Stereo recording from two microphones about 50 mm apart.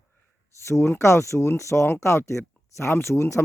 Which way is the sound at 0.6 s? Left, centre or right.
Left.